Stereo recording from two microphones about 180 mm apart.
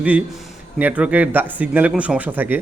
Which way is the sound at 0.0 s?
5° right (ahead or behind).